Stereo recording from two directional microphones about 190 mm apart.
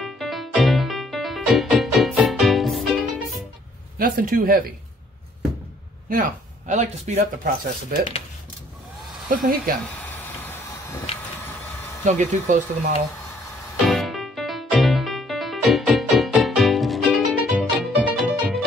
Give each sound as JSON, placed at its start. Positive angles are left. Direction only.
{"t": 0.0, "sound": "music", "side_deg": 0}
{"t": 4.0, "sound": "speech", "side_deg": -45}
{"t": 6.7, "sound": "speech", "side_deg": -40}
{"t": 7.9, "sound": "speech", "side_deg": -50}
{"t": 9.3, "sound": "speech", "side_deg": -50}
{"t": 12.0, "sound": "speech", "side_deg": -40}
{"t": 13.8, "sound": "music", "side_deg": 0}